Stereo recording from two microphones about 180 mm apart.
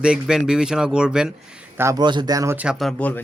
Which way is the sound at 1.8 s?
20° right (ahead or behind).